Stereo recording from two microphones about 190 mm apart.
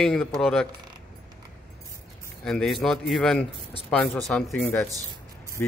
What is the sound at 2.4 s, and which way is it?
A man's voice, 5° left (ahead or behind).